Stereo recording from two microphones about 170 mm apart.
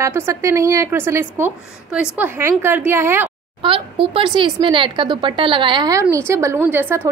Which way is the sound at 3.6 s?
30° right (ahead or behind).